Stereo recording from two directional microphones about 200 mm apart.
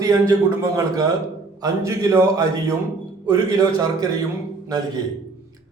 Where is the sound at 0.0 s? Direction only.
15° right (ahead or behind).